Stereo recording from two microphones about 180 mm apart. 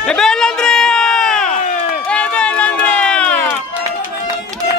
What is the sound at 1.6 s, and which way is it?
Run, 40° left (ahead or behind).